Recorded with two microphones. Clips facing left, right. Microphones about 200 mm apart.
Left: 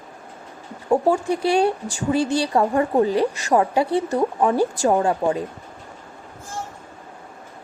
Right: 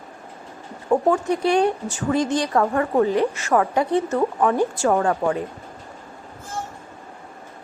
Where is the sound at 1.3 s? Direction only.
30° left (ahead or behind).